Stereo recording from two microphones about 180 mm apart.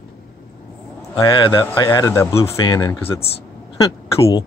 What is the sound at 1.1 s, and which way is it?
A man's voice, 25° left (ahead or behind).